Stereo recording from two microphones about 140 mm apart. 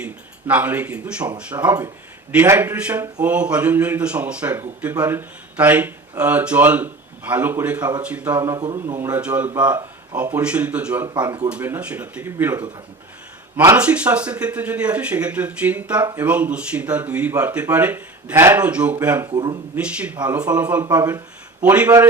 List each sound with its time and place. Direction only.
0.0 s a man's voice: 10° right (ahead or behind)
1.5 s speech: 30° right (ahead or behind)
2.3 s speech: 15° right (ahead or behind)
8.4 s speech: 25° right (ahead or behind)
9.0 s speech: 15° right (ahead or behind)
11.1 s speech: 30° right (ahead or behind)
11.4 s speech: 10° right (ahead or behind)
13.7 s speech: 10° right (ahead or behind)
19.2 s speech: 30° right (ahead or behind)
19.7 s speech: 10° right (ahead or behind)